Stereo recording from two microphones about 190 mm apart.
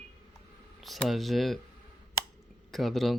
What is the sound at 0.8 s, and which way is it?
Speech, centre (ahead or behind).